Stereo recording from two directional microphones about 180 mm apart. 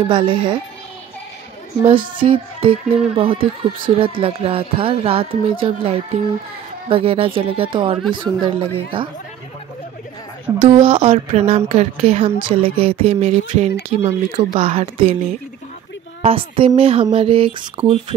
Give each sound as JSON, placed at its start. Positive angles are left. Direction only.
{"t": 0.1, "sound": "speech", "side_deg": -30}
{"t": 1.9, "sound": "a woman's voice", "side_deg": -30}
{"t": 10.6, "sound": "a woman's voice", "side_deg": -30}